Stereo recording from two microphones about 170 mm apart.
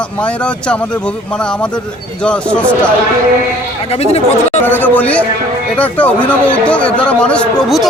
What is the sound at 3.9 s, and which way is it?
Speech, 35° left (ahead or behind).